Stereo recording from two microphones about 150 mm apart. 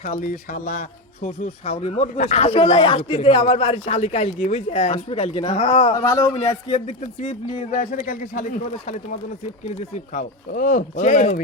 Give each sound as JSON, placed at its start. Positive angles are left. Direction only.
{"t": 0.0, "sound": "speech", "side_deg": 60}
{"t": 5.9, "sound": "a man's voice", "side_deg": 25}
{"t": 10.5, "sound": "a man's voice", "side_deg": 60}